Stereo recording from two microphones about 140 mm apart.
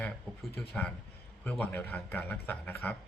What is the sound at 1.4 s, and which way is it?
A man's voice, 10° left (ahead or behind).